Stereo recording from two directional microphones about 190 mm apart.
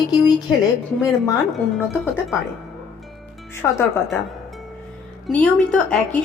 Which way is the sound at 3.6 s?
10° left (ahead or behind).